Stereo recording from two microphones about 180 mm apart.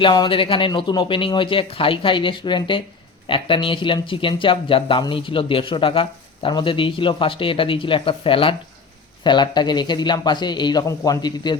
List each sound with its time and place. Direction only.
0.0 s speech: 25° left (ahead or behind)